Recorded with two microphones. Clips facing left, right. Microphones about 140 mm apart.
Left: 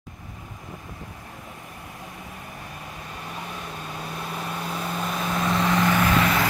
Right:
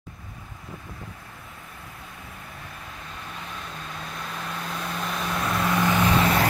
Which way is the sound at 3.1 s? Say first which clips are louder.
Left 3 dB; 10° left (ahead or behind).